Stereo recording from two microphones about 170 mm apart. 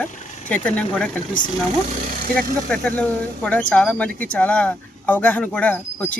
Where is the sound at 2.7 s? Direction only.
10° left (ahead or behind).